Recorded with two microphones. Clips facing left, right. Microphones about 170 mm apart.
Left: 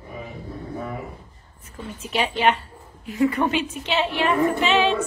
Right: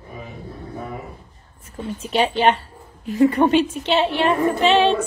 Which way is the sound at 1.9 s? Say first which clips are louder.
Right 5 dB; 30° right (ahead or behind).